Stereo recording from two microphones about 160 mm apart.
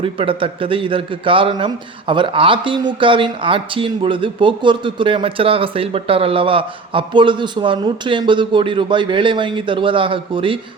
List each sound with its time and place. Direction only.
0.0 s a man's voice: 35° right (ahead or behind)